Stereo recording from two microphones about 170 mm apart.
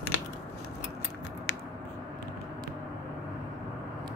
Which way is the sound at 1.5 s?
90° left.